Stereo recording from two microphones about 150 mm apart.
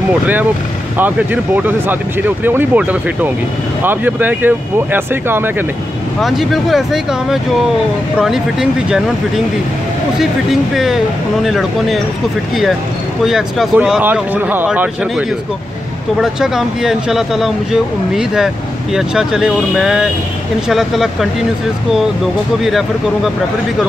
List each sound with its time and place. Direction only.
0.9 s speech: 10° right (ahead or behind)
6.2 s speech: centre (ahead or behind)
10.1 s speech: centre (ahead or behind)
13.2 s speech: centre (ahead or behind)
22.6 s speech: centre (ahead or behind)